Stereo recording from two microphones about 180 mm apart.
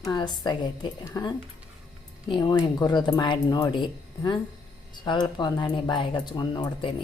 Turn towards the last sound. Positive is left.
turn(degrees=30)  # may be behind; listen again after turning